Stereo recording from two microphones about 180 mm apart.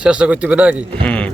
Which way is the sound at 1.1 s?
5° left (ahead or behind).